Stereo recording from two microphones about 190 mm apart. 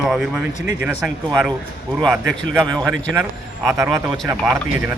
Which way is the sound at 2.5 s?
5° left (ahead or behind).